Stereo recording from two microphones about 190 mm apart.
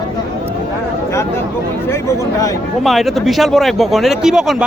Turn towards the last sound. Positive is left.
turn(degrees=-5)  # may be behind; listen again after turning